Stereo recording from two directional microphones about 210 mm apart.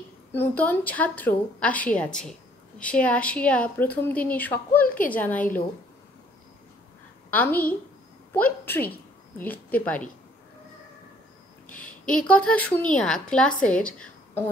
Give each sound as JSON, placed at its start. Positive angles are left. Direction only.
{"t": 0.3, "sound": "a woman's voice", "side_deg": 10}
{"t": 4.8, "sound": "a sound", "side_deg": 40}
{"t": 5.1, "sound": "a woman's voice", "side_deg": 10}
{"t": 7.3, "sound": "a woman's voice", "side_deg": 10}
{"t": 12.1, "sound": "a woman's voice", "side_deg": 5}